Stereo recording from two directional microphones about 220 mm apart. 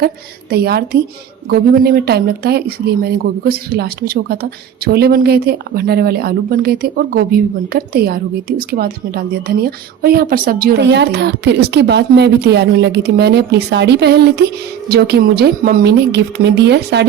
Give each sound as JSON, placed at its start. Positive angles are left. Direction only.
{"t": 0.5, "sound": "a woman's voice", "side_deg": -45}